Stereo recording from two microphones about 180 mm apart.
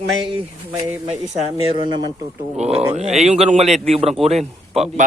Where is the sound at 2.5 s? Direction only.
35° right (ahead or behind).